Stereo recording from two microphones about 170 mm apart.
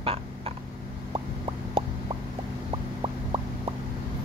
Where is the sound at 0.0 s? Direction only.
35° right (ahead or behind).